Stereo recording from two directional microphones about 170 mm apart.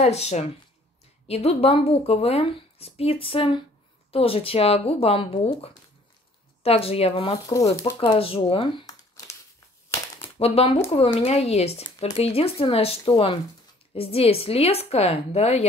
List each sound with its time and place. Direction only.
0.0 s speech: 40° left (ahead or behind)
8.0 s a sound: 35° left (ahead or behind)
10.4 s speech: 35° left (ahead or behind)